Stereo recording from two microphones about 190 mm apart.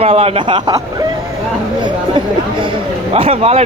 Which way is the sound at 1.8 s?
25° right (ahead or behind).